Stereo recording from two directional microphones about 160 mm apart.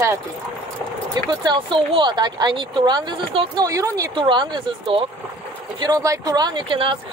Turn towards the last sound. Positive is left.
turn(degrees=-30)  # may be behind; listen again after turning